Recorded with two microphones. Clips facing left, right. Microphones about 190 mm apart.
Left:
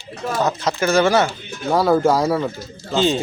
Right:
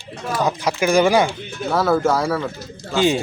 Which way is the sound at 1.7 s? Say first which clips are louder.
Left 2 dB; 15° left (ahead or behind).